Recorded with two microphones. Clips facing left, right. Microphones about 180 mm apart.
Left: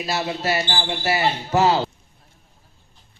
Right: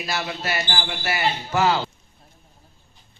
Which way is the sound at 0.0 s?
30° left (ahead or behind).